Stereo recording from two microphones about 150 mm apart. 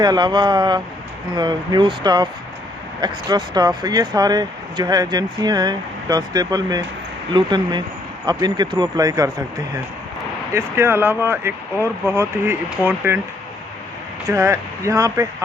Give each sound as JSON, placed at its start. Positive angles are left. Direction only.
{"t": 0.0, "sound": "speech", "side_deg": -30}
{"t": 10.5, "sound": "speech", "side_deg": -15}
{"t": 14.3, "sound": "speech", "side_deg": -20}